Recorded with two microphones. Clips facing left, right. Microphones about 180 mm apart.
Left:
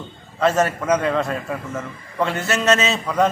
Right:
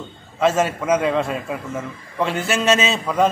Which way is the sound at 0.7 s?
5° right (ahead or behind).